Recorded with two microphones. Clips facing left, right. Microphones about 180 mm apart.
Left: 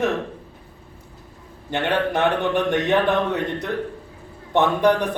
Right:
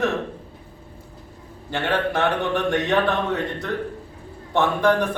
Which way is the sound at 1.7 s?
20° left (ahead or behind).